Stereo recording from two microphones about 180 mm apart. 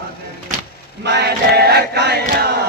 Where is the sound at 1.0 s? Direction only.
65° right (ahead or behind).